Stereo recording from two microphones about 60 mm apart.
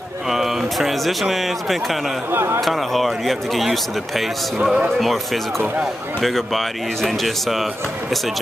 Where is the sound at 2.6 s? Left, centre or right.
Centre.